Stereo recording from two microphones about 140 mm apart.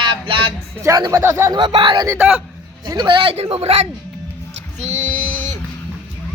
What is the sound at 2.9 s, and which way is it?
Speech, 35° right (ahead or behind).